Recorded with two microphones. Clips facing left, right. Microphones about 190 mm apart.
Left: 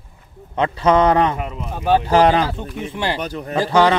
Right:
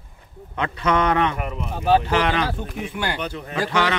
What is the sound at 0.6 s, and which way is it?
Speech, 30° left (ahead or behind).